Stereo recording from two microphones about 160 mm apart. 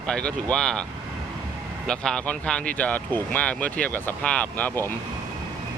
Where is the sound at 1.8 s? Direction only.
5° left (ahead or behind).